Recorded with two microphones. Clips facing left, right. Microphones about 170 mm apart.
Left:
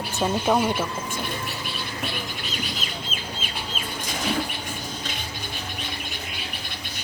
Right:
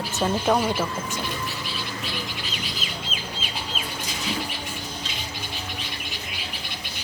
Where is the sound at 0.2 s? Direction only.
5° left (ahead or behind).